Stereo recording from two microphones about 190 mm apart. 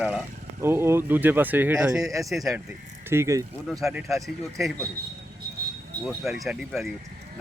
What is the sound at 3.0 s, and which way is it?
Speech, 15° right (ahead or behind).